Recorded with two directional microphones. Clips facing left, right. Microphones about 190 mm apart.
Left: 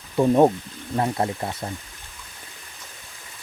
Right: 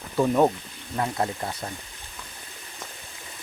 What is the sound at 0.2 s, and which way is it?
Speech, 20° left (ahead or behind).